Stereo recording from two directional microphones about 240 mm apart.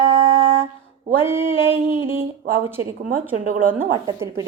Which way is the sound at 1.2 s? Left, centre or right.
Centre.